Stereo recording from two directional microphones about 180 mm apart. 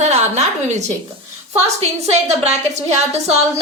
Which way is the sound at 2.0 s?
35° right (ahead or behind).